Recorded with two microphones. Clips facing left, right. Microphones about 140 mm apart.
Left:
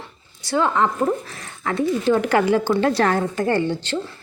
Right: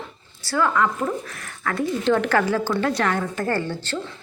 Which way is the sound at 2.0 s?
10° left (ahead or behind).